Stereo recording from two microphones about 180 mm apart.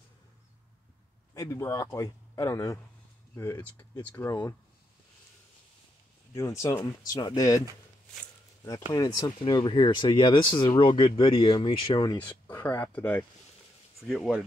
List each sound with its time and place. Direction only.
1.3 s a man's voice: 20° left (ahead or behind)
6.3 s a man's voice: 15° left (ahead or behind)
8.6 s speech: 20° left (ahead or behind)
12.2 s speech: 10° left (ahead or behind)